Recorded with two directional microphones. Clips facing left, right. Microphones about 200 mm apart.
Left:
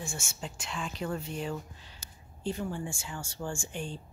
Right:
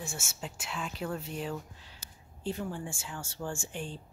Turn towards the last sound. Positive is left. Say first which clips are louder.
# left 1 dB
turn(degrees=0)  # may be behind; listen again after turning